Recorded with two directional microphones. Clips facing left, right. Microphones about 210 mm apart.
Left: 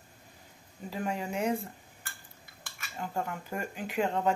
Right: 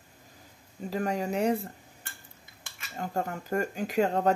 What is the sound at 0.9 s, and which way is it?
Speech, 40° right (ahead or behind).